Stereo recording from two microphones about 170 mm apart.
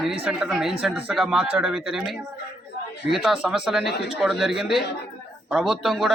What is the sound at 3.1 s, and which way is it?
Speech, centre (ahead or behind).